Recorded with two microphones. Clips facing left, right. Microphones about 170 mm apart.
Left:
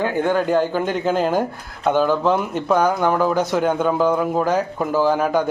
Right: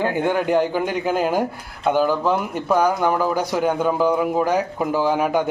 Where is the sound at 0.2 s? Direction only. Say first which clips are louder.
Left 2 dB; 15° right (ahead or behind).